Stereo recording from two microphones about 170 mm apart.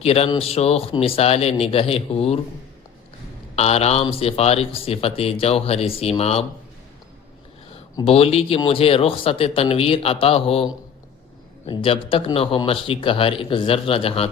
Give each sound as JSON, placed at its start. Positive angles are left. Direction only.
{"t": 0.0, "sound": "speech", "side_deg": 35}
{"t": 3.5, "sound": "speech", "side_deg": 40}
{"t": 8.0, "sound": "speech", "side_deg": 35}